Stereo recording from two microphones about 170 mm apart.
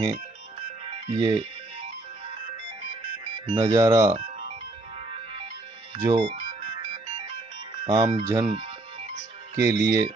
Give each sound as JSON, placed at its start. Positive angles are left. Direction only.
{"t": 0.8, "sound": "music", "side_deg": -35}
{"t": 1.2, "sound": "speech", "side_deg": -25}
{"t": 2.9, "sound": "music", "side_deg": -30}
{"t": 5.1, "sound": "music", "side_deg": -30}
{"t": 5.9, "sound": "speech", "side_deg": -20}
{"t": 6.2, "sound": "music", "side_deg": -30}
{"t": 7.8, "sound": "speech", "side_deg": -25}
{"t": 9.1, "sound": "music", "side_deg": -20}